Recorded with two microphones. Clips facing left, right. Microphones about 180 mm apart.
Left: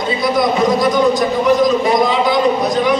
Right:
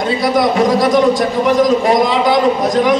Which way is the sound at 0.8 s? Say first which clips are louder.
Right 2 dB; 90° right.